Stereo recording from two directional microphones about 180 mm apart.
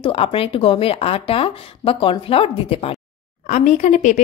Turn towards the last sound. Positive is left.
turn(degrees=40)  # may be behind; listen again after turning